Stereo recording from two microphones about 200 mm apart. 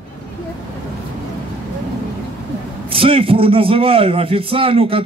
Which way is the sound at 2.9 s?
25° right (ahead or behind).